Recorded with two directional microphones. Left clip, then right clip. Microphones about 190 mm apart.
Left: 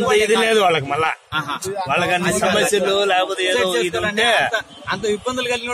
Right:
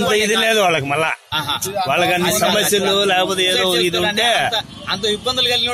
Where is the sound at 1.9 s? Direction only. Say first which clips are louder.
Right 2 dB; 40° right (ahead or behind).